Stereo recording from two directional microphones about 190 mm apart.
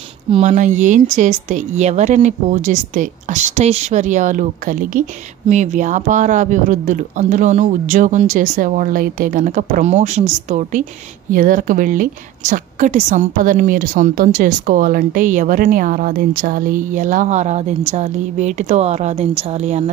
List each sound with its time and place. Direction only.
0.3 s a woman's voice: 40° right (ahead or behind)